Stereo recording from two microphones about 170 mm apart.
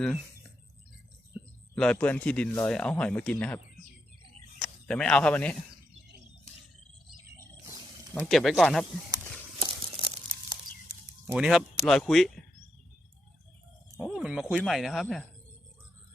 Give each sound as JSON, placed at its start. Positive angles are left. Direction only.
{"t": 1.7, "sound": "speech", "side_deg": 5}
{"t": 4.6, "sound": "speech", "side_deg": 5}
{"t": 7.3, "sound": "wild animals", "side_deg": -20}
{"t": 8.1, "sound": "speech", "side_deg": 5}
{"t": 9.6, "sound": "tearing", "side_deg": -30}
{"t": 11.3, "sound": "speech", "side_deg": -5}
{"t": 14.0, "sound": "speech", "side_deg": 0}